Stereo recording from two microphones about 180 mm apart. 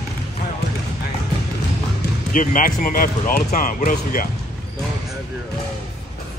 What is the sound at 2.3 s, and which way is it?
Speech, 45° left (ahead or behind).